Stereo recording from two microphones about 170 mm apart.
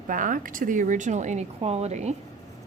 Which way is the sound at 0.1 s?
55° right (ahead or behind).